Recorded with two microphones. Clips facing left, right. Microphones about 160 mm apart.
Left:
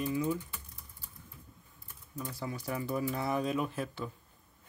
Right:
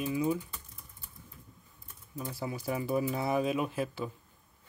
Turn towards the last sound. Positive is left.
turn(degrees=-5)  # may be behind; listen again after turning